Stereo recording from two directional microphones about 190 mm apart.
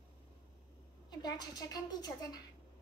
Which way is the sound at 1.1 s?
20° left (ahead or behind).